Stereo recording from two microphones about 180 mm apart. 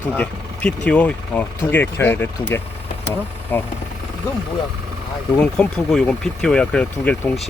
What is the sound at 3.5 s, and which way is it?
Speech, 10° left (ahead or behind).